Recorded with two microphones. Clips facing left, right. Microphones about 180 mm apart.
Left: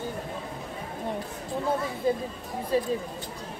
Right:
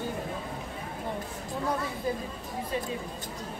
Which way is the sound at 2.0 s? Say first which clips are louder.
Left 5 dB; 25° left (ahead or behind).